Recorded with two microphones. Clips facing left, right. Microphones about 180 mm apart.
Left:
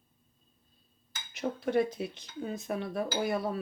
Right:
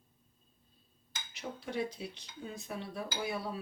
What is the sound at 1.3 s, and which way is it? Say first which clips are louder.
Speech: left 10 dB; 50° left (ahead or behind).